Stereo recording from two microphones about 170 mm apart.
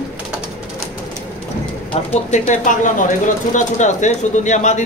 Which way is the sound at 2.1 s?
45° left (ahead or behind).